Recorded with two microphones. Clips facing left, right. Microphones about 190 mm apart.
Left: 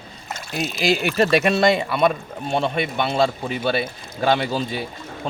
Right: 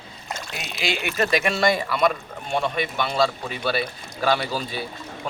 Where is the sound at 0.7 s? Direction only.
40° left (ahead or behind).